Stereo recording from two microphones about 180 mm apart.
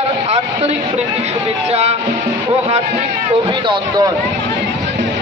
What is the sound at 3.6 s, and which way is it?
Speech, 25° right (ahead or behind).